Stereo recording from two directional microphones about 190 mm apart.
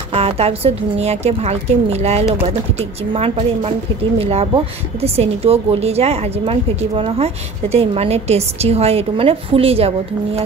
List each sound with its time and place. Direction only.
0.1 s a woman's voice: 30° right (ahead or behind)